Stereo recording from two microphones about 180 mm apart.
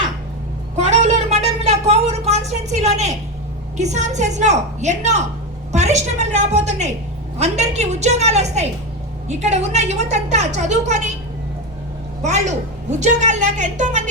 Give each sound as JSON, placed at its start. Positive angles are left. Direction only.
{"t": 0.8, "sound": "a sound", "side_deg": -40}
{"t": 3.8, "sound": "a woman's voice", "side_deg": -40}
{"t": 12.2, "sound": "a woman's voice", "side_deg": -40}